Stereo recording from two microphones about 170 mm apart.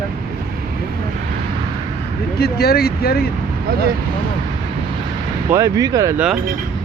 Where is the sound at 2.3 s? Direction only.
65° left (ahead or behind).